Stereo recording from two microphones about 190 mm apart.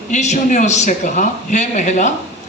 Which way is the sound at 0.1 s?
40° left (ahead or behind).